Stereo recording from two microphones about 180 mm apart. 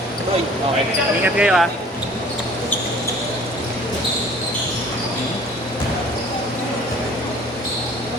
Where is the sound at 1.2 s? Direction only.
5° right (ahead or behind).